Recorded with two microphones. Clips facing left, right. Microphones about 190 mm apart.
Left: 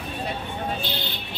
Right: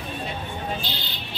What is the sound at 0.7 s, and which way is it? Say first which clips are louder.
Vehicle: left 2 dB; 55° left (ahead or behind).